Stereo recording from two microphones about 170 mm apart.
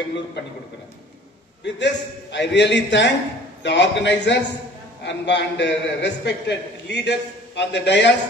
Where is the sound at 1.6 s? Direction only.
90° left.